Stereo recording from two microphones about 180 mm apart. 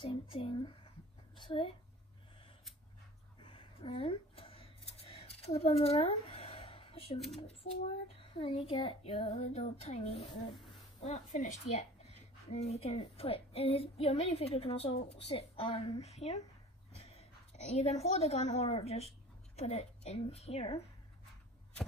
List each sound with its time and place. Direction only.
0.0 s a child's voice: 30° left (ahead or behind)
3.3 s a sound: 30° left (ahead or behind)
7.3 s a woman's voice: 30° left (ahead or behind)